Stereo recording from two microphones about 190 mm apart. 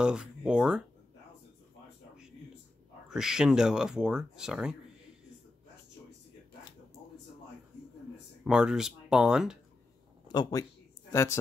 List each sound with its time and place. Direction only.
0.0 s speech: 5° right (ahead or behind)
3.1 s speech: 5° right (ahead or behind)
8.5 s speech: 5° right (ahead or behind)
10.2 s speech: 20° left (ahead or behind)